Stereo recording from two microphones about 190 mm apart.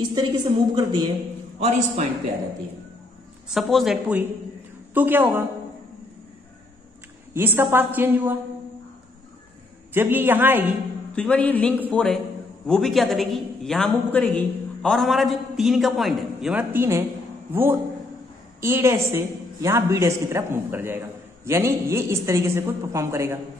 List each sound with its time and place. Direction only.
0.0 s a man's voice: 20° right (ahead or behind)
1.6 s a man's voice: 40° right (ahead or behind)
3.4 s a man's voice: centre (ahead or behind)
7.3 s a man's voice: 10° right (ahead or behind)
9.9 s a man's voice: 10° right (ahead or behind)
11.1 s a man's voice: 5° left (ahead or behind); by 23.4 s 15° right (ahead or behind)